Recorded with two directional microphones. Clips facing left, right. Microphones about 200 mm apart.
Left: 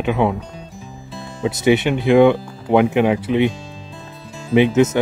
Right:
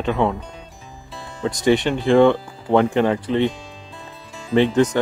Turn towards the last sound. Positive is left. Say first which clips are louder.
# left 2 dB
turn(degrees=5)  # may be behind; listen again after turning